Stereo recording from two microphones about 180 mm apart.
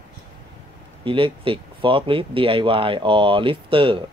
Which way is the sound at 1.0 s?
30° right (ahead or behind).